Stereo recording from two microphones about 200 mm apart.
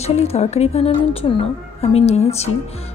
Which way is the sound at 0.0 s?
30° left (ahead or behind).